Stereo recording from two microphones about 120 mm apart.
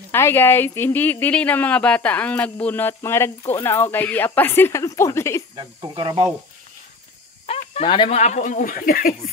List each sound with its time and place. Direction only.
0.1 s speech: 20° left (ahead or behind)
5.6 s speech: 40° right (ahead or behind)
7.4 s a sound: 60° left (ahead or behind)
8.1 s speech: 70° left (ahead or behind); by 8.6 s 90° left